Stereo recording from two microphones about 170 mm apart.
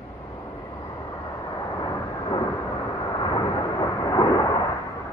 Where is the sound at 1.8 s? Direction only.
25° left (ahead or behind).